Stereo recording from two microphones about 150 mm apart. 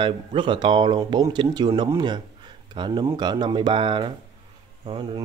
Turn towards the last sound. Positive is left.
turn(degrees=-35)  # may be behind; listen again after turning